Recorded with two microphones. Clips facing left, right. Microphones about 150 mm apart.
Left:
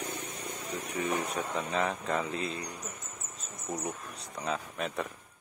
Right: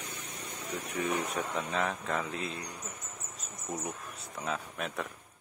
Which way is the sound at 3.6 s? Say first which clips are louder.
Left 2 dB; centre (ahead or behind).